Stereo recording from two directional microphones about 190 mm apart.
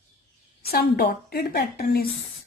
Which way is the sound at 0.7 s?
55° left (ahead or behind).